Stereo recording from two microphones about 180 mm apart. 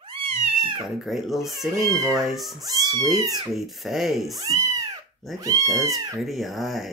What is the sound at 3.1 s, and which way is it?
Speech, 20° right (ahead or behind).